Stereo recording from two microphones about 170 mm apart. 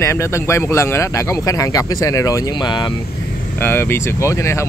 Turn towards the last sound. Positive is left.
turn(degrees=15)  # may be behind; listen again after turning